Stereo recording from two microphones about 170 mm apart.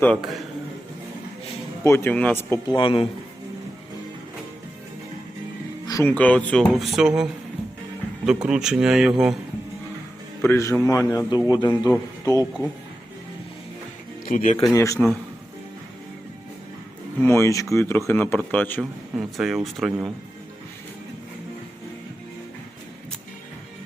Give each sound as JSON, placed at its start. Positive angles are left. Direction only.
{"t": 0.0, "sound": "a man's voice", "side_deg": 0}
{"t": 1.8, "sound": "speech", "side_deg": 15}
{"t": 2.6, "sound": "a man's voice", "side_deg": 30}
{"t": 5.8, "sound": "music", "side_deg": 20}
{"t": 6.1, "sound": "a man's voice", "side_deg": 10}
{"t": 8.2, "sound": "a man's voice", "side_deg": -5}
{"t": 10.5, "sound": "a man's voice", "side_deg": 15}
{"t": 14.3, "sound": "speech", "side_deg": 50}
{"t": 14.7, "sound": "a man's voice", "side_deg": 20}
{"t": 17.2, "sound": "speech", "side_deg": 15}
{"t": 19.1, "sound": "a man's voice", "side_deg": 0}